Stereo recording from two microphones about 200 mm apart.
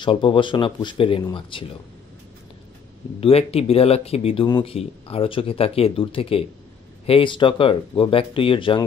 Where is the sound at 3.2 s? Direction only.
30° left (ahead or behind).